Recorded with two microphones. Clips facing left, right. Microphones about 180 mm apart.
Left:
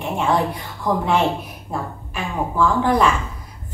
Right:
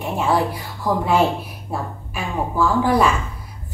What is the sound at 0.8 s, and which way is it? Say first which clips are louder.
A woman's voice: right 1 dB; 5° right (ahead or behind).